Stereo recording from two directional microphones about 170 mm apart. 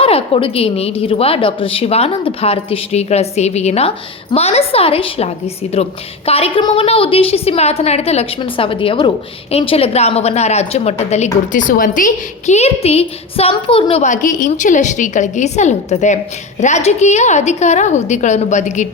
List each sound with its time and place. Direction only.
0.0 s a woman's voice: 35° left (ahead or behind)
14.0 s a woman's voice: 50° left (ahead or behind)